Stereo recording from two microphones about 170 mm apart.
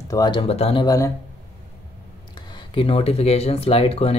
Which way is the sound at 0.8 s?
20° left (ahead or behind).